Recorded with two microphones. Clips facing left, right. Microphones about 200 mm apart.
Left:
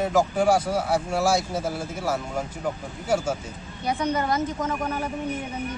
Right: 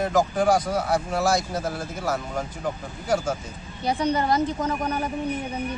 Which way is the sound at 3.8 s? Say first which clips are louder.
Right 2 dB; 30° right (ahead or behind).